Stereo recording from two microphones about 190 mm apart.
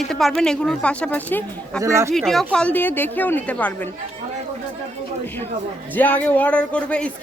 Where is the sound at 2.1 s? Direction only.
Centre (ahead or behind).